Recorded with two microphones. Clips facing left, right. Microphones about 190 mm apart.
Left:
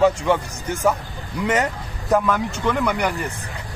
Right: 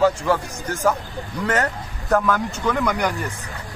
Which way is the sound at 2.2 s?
Centre (ahead or behind).